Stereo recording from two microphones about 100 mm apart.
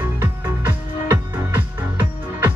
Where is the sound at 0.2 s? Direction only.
25° right (ahead or behind).